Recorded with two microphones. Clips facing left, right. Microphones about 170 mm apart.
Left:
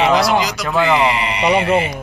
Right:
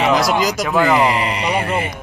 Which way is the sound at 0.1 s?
45° right (ahead or behind).